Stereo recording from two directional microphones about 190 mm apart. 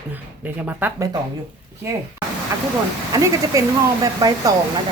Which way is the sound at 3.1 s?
15° right (ahead or behind).